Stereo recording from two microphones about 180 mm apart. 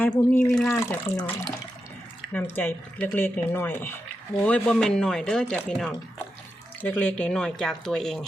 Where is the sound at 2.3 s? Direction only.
10° left (ahead or behind).